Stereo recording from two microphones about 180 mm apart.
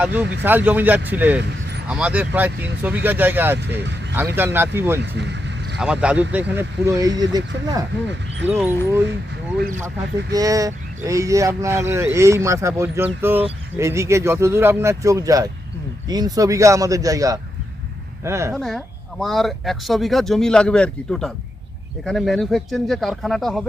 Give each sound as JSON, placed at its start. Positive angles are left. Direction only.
{"t": 0.0, "sound": "speech", "side_deg": -10}
{"t": 3.6, "sound": "speech", "side_deg": -70}
{"t": 4.4, "sound": "speech", "side_deg": -15}
{"t": 5.1, "sound": "vehicle", "side_deg": -75}
{"t": 5.8, "sound": "a man's voice", "side_deg": -5}
{"t": 8.0, "sound": "speech", "side_deg": -80}
{"t": 8.4, "sound": "speech", "side_deg": -10}
{"t": 10.3, "sound": "a man's voice", "side_deg": -20}
{"t": 18.5, "sound": "speech", "side_deg": 0}